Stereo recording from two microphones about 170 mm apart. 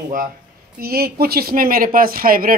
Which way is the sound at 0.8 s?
65° right (ahead or behind).